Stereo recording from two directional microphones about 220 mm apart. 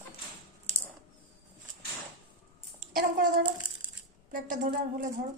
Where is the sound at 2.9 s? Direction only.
40° right (ahead or behind).